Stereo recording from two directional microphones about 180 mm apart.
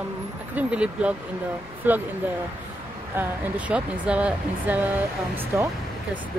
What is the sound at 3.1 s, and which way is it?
Speech, 10° right (ahead or behind).